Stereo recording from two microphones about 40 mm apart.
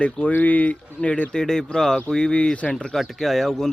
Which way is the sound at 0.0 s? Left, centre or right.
Left.